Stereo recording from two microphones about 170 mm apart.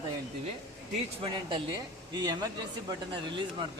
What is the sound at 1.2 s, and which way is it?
Speech, 30° right (ahead or behind).